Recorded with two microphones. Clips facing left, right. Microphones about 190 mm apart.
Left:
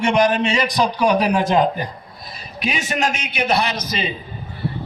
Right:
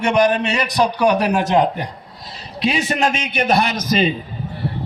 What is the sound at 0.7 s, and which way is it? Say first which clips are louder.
A man's voice: right 5 dB; 70° right (ahead or behind).